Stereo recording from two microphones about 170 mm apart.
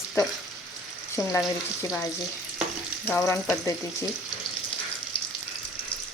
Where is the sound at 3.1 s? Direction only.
15° left (ahead or behind).